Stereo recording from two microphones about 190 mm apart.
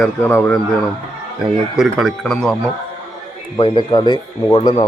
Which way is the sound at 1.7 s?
Centre (ahead or behind).